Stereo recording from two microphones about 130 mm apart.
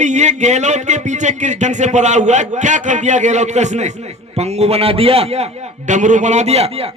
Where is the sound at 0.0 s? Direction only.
65° right (ahead or behind).